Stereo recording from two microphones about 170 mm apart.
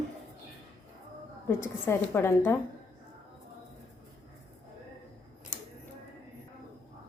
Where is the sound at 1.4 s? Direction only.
15° left (ahead or behind).